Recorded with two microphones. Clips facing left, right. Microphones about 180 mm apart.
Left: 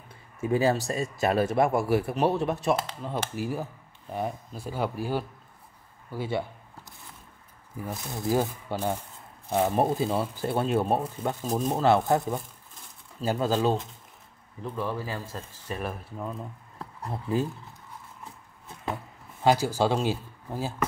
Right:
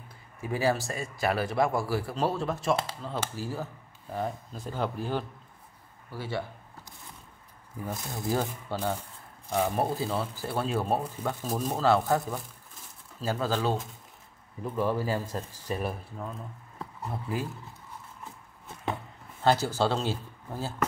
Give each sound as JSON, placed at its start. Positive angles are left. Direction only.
{"t": 0.4, "sound": "a man's voice", "side_deg": 25}
{"t": 2.5, "sound": "speech", "side_deg": 0}
{"t": 3.0, "sound": "speech", "side_deg": 15}
{"t": 7.8, "sound": "speech", "side_deg": 0}
{"t": 8.1, "sound": "a man's voice", "side_deg": 15}
{"t": 13.5, "sound": "a man's voice", "side_deg": 20}
{"t": 14.6, "sound": "a man's voice", "side_deg": -10}
{"t": 15.7, "sound": "speech", "side_deg": 0}
{"t": 17.1, "sound": "a man's voice", "side_deg": 25}
{"t": 18.2, "sound": "a sound", "side_deg": 0}
{"t": 19.4, "sound": "speech", "side_deg": 10}